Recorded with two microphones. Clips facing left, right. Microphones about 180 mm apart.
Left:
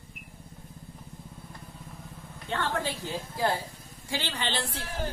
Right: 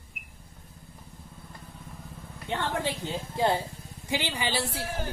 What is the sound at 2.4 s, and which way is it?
A woman's voice, 15° right (ahead or behind).